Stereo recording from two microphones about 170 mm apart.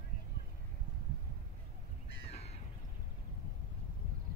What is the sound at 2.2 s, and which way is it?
Crow, 40° left (ahead or behind).